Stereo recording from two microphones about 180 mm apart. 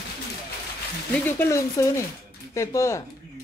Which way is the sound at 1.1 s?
10° left (ahead or behind).